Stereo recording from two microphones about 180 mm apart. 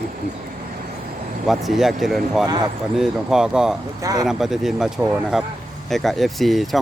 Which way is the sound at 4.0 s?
20° right (ahead or behind).